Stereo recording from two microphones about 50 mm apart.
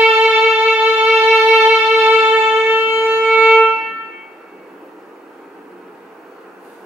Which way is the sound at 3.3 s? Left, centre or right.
Centre.